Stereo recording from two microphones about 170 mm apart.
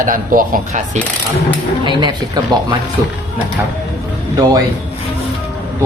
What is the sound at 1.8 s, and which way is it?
Speech, 25° right (ahead or behind).